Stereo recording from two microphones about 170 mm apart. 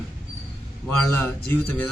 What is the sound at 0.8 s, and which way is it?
Speech, 5° left (ahead or behind).